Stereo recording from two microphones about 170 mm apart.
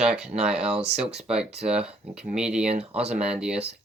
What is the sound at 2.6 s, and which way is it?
Speech, 40° right (ahead or behind).